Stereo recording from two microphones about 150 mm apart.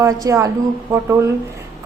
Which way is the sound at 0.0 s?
20° right (ahead or behind).